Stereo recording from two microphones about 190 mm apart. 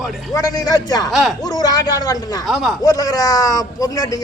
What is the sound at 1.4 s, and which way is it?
A man's voice, 20° left (ahead or behind).